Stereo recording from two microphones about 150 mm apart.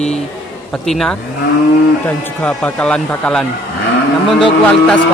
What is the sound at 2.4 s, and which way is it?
A man's voice, 5° left (ahead or behind).